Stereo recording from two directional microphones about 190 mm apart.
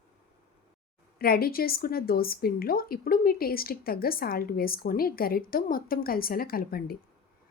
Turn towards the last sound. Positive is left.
turn(degrees=50)  # may be behind; listen again after turning